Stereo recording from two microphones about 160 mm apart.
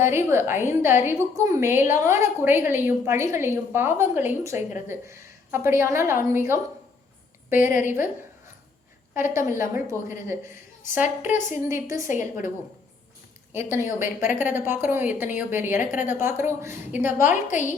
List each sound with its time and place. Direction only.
0.0 s a woman's voice: 15° right (ahead or behind)
7.7 s a woman's voice: 55° left (ahead or behind)
9.1 s a woman's voice: 15° right (ahead or behind)
11.0 s a woman's voice: 50° left (ahead or behind)
11.5 s a woman's voice: 20° right (ahead or behind)
12.0 s a woman's voice: 50° left (ahead or behind)
13.5 s a woman's voice: 15° right (ahead or behind)
17.5 s a woman's voice: 50° left (ahead or behind)